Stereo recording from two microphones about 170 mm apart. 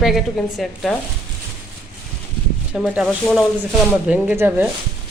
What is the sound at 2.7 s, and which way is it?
A woman's voice, 5° right (ahead or behind).